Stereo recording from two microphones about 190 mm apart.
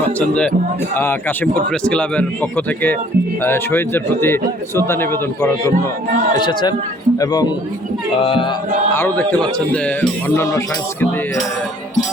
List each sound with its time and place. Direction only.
0.2 s speech: 5° left (ahead or behind)
1.7 s a man's voice: 5° left (ahead or behind)
6.3 s speech: 25° left (ahead or behind)
9.0 s a man's voice: 10° left (ahead or behind)